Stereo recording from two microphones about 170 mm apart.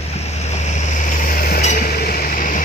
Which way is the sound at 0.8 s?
50° left (ahead or behind).